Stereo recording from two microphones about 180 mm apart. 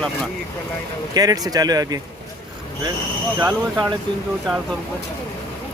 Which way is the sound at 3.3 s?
20° right (ahead or behind).